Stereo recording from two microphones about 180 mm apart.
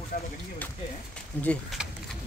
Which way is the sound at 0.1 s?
50° left (ahead or behind).